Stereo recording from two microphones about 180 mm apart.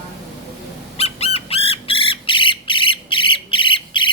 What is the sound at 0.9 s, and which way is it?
Squawk, 35° left (ahead or behind).